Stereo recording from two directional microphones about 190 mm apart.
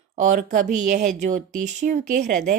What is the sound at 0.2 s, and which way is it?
A woman's voice, 40° right (ahead or behind).